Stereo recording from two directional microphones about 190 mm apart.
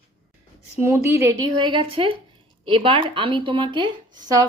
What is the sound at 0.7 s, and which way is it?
Speech, 15° right (ahead or behind).